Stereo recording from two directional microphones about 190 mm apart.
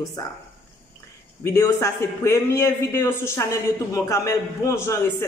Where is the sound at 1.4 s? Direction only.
15° left (ahead or behind).